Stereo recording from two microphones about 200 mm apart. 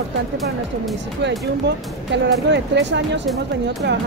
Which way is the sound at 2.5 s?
60° right (ahead or behind).